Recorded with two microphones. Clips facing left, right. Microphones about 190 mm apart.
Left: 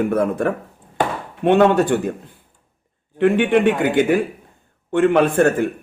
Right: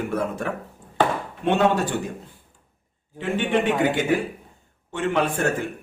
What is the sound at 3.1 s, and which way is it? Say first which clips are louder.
Speech: left 8 dB; 60° left (ahead or behind).